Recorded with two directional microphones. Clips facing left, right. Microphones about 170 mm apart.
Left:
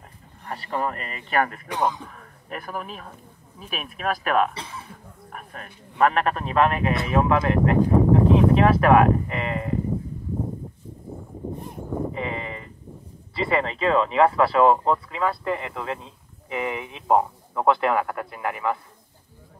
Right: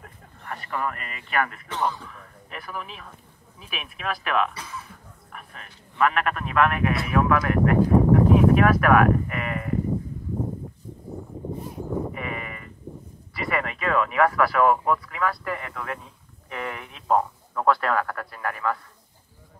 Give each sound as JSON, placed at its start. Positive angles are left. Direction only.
{"t": 0.5, "sound": "speech", "side_deg": 30}
{"t": 1.7, "sound": "speech", "side_deg": 15}
{"t": 2.0, "sound": "speech", "side_deg": 40}
{"t": 4.6, "sound": "speech", "side_deg": 30}
{"t": 5.3, "sound": "speech", "side_deg": 40}
{"t": 12.1, "sound": "sheep", "side_deg": 25}
{"t": 13.3, "sound": "speech", "side_deg": 25}